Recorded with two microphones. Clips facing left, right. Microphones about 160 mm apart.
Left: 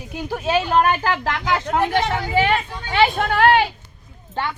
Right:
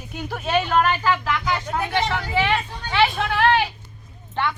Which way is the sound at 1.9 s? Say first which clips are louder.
Left 3 dB; 50° left (ahead or behind).